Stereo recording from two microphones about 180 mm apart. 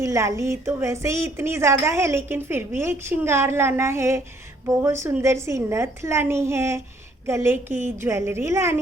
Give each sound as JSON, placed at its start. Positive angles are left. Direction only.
{"t": 0.0, "sound": "a woman's voice", "side_deg": -15}